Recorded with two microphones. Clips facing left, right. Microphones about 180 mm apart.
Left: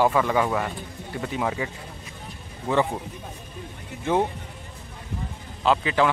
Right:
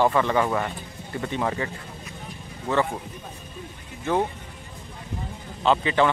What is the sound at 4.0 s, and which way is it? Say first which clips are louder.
Speech: left 1 dB; 15° left (ahead or behind).